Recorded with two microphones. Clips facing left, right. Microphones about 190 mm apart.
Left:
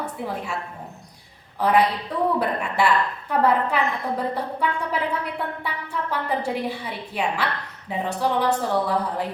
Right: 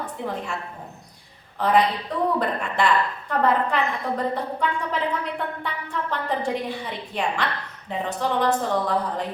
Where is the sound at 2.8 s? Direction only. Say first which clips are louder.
Left 1 dB; 5° left (ahead or behind).